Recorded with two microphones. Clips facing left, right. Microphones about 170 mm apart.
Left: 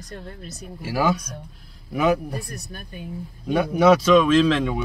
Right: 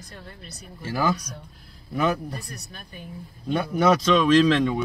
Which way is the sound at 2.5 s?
50° left (ahead or behind).